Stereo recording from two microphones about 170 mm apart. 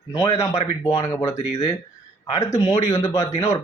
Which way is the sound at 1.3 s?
45° left (ahead or behind).